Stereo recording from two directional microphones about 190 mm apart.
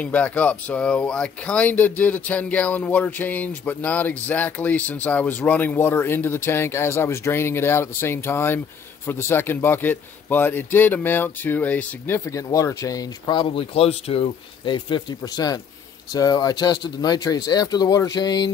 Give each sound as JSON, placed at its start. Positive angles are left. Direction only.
{"t": 0.0, "sound": "speech", "side_deg": 5}